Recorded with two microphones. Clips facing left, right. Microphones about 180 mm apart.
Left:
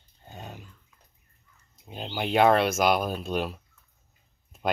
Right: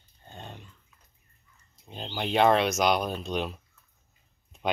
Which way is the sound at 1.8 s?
5° left (ahead or behind).